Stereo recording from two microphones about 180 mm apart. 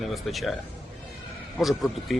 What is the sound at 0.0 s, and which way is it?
Speech, centre (ahead or behind).